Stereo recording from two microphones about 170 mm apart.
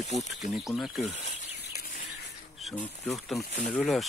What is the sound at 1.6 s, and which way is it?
Chicken, 75° left (ahead or behind).